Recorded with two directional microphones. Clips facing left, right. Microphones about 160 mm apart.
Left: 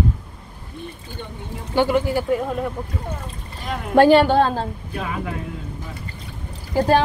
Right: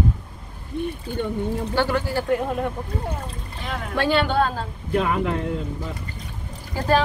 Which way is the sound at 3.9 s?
45° left (ahead or behind).